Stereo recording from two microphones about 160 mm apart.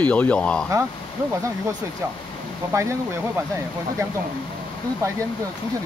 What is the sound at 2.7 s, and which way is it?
Speech, 20° right (ahead or behind).